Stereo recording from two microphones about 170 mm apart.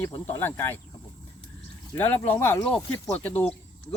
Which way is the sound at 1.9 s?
10° left (ahead or behind).